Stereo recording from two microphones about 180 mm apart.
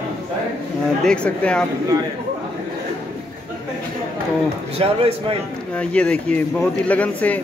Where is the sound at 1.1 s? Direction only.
5° left (ahead or behind).